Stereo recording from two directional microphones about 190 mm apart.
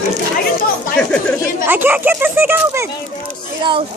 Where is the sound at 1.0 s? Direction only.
5° left (ahead or behind).